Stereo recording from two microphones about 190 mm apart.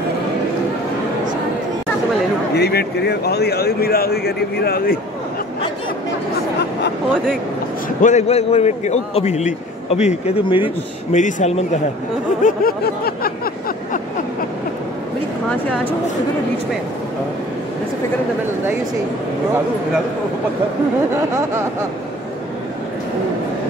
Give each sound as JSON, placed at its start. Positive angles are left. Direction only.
{"t": 2.5, "sound": "speech", "side_deg": 60}
{"t": 8.0, "sound": "a man's voice", "side_deg": 35}
{"t": 11.1, "sound": "a man's voice", "side_deg": 40}
{"t": 12.4, "sound": "a sound", "side_deg": 50}
{"t": 15.5, "sound": "speech", "side_deg": 10}